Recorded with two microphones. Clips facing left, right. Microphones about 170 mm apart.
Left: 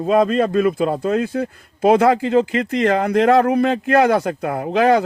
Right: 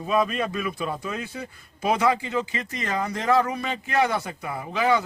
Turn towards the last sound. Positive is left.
turn(degrees=65)  # may be behind; listen again after turning